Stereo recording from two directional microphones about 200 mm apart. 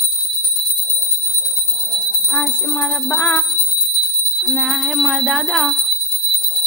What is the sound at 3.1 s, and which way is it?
Music, 5° left (ahead or behind).